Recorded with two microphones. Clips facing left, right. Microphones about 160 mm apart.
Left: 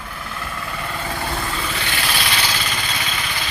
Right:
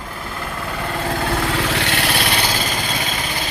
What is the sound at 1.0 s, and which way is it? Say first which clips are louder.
Vehicle: right 6 dB; 70° right (ahead or behind).